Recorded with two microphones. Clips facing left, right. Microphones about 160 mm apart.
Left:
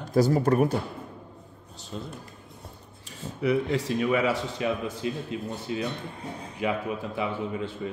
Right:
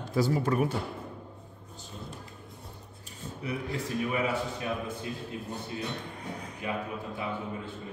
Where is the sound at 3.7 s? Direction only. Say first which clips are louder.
Left 6 dB; 90° left.